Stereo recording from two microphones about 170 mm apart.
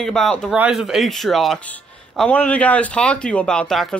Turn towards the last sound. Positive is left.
turn(degrees=5)  # may be behind; listen again after turning